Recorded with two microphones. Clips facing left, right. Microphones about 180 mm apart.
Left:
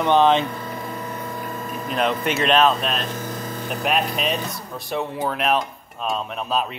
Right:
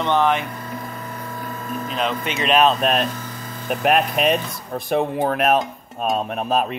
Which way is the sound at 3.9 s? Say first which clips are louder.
Right 5 dB; 55° right (ahead or behind).